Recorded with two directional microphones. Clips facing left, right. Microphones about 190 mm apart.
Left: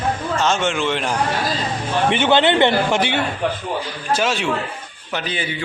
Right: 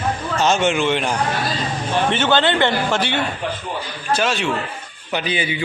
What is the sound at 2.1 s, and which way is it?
A man's voice, 15° left (ahead or behind).